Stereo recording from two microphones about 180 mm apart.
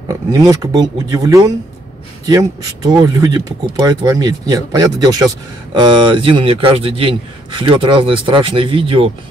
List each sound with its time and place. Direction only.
0.1 s speech: 20° right (ahead or behind)